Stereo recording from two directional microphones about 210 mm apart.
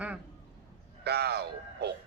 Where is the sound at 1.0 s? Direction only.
50° right (ahead or behind).